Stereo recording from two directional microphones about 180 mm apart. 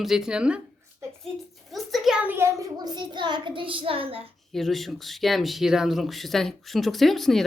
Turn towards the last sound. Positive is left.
turn(degrees=0)  # may be behind; listen again after turning